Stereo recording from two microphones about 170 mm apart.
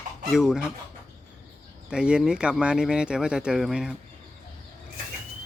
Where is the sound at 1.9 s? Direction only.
5° right (ahead or behind).